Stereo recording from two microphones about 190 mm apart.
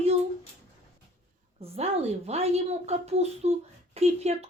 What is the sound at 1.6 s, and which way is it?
A woman's voice, 35° right (ahead or behind).